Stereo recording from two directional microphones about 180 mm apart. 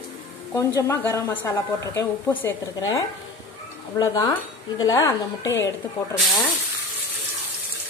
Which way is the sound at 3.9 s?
20° left (ahead or behind).